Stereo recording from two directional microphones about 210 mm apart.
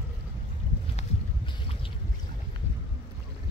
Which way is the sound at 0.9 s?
25° left (ahead or behind).